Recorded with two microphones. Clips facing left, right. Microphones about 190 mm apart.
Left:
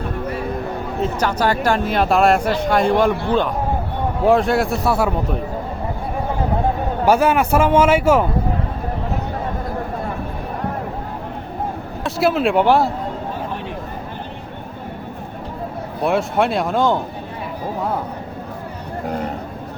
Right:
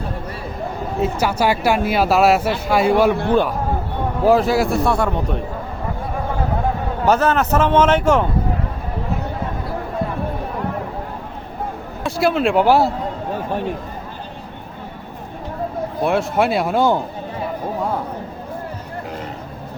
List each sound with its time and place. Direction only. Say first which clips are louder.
1.0 s speech: right 1 dB; 10° right (ahead or behind)
4.3 s a man's voice: right 1 dB; centre (ahead or behind)
7.0 s a man's voice: left 1 dB; 10° left (ahead or behind)
12.0 s a man's voice: even; centre (ahead or behind)
16.0 s a man's voice: even; centre (ahead or behind)